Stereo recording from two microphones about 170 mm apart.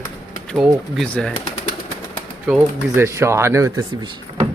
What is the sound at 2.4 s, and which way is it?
Speech, 10° right (ahead or behind).